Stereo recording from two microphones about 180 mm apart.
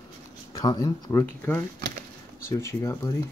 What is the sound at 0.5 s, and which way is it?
Speech, 25° left (ahead or behind).